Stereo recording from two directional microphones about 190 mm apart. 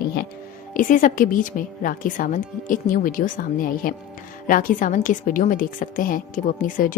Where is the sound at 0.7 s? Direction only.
45° left (ahead or behind).